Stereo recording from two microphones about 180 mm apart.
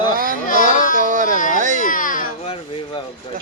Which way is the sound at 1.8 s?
50° left (ahead or behind).